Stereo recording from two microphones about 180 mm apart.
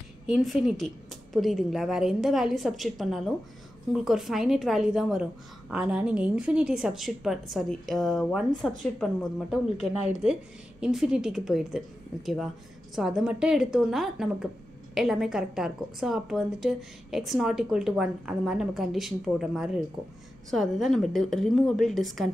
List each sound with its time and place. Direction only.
0.3 s a woman's voice: centre (ahead or behind)
12.9 s a woman's voice: 5° right (ahead or behind)